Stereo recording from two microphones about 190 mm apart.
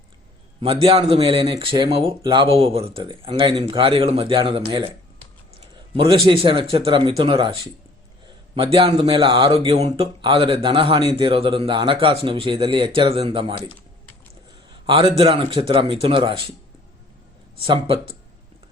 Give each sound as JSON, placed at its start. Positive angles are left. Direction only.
{"t": 0.6, "sound": "speech", "side_deg": -30}
{"t": 5.9, "sound": "speech", "side_deg": -30}
{"t": 8.5, "sound": "speech", "side_deg": -30}
{"t": 14.8, "sound": "speech", "side_deg": -30}